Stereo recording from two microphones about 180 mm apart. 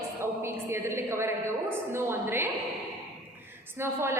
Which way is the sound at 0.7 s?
15° right (ahead or behind).